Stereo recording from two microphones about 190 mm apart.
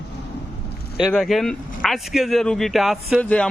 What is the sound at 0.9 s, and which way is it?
A man's voice, centre (ahead or behind).